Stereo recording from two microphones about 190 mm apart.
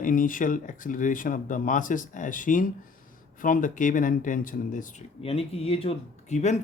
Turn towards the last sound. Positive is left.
turn(degrees=35)  # may be behind; listen again after turning